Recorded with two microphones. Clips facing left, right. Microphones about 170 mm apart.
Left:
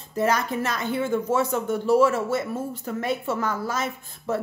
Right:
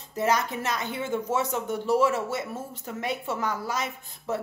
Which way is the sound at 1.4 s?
50° left (ahead or behind).